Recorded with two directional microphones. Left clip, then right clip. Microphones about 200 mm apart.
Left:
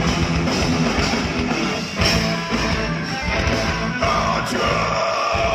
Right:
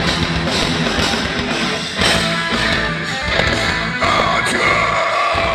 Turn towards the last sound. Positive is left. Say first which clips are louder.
# right 4 dB
turn(degrees=-25)  # may be behind; listen again after turning